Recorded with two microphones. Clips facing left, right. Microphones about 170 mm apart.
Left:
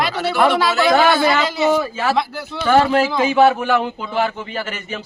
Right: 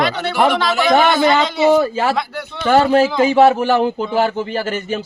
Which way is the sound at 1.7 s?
40° right (ahead or behind).